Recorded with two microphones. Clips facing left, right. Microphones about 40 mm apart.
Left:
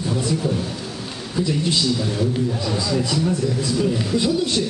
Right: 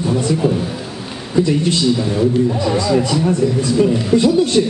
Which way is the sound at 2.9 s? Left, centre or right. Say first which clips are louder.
Right 4 dB; centre.